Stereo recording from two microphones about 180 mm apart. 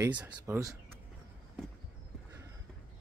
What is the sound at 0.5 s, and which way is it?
Speech, 20° right (ahead or behind).